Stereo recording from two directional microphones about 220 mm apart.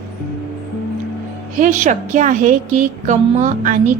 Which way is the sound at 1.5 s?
35° right (ahead or behind).